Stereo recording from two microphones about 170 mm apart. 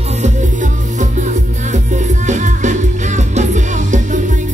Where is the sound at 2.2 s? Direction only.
45° right (ahead or behind).